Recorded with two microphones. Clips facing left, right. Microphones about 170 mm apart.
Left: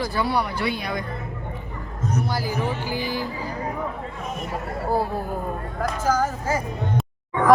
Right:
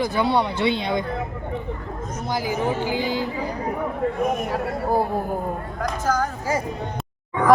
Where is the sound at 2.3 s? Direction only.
20° right (ahead or behind).